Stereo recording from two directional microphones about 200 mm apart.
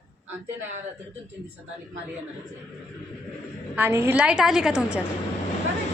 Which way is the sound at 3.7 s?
10° right (ahead or behind).